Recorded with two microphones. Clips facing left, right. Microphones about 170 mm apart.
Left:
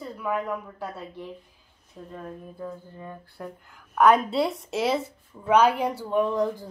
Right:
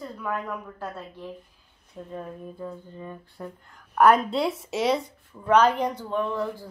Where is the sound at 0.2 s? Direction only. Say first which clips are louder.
Left 3 dB; 10° left (ahead or behind).